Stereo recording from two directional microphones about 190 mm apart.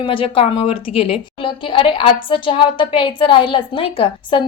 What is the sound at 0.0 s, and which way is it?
A woman's voice, 25° left (ahead or behind).